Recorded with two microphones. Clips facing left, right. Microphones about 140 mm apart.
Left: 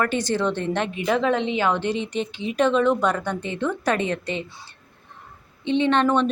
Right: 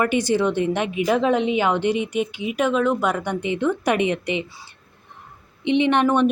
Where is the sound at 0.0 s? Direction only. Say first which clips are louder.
Right 3 dB; 15° right (ahead or behind).